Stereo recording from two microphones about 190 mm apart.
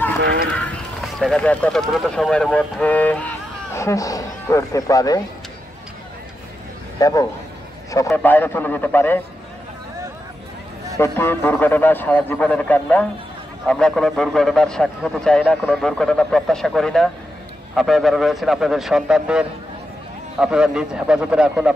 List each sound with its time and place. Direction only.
0.2 s speech: 55° right (ahead or behind)
0.5 s speech: 5° left (ahead or behind); by 5.2 s 20° left (ahead or behind)
7.0 s a man's voice: 15° left (ahead or behind)
11.0 s a man's voice: 10° left (ahead or behind); by 21.7 s 5° right (ahead or behind)